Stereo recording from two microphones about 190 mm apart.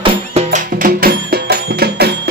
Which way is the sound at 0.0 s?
30° right (ahead or behind).